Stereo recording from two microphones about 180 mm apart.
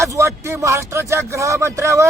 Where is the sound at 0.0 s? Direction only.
15° right (ahead or behind).